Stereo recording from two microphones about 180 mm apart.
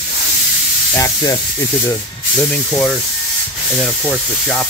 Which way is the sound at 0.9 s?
20° left (ahead or behind).